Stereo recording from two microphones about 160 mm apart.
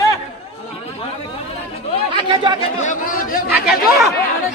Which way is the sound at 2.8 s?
55° left (ahead or behind).